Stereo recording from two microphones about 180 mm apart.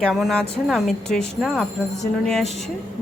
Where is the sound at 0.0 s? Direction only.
Centre (ahead or behind).